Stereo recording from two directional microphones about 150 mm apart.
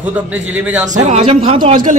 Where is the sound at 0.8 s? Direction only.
50° right (ahead or behind); by 1.8 s 35° right (ahead or behind).